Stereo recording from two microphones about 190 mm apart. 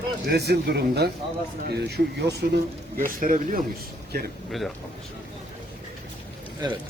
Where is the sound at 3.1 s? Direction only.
45° right (ahead or behind).